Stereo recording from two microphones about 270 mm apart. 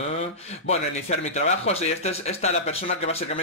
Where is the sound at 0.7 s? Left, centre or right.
Left.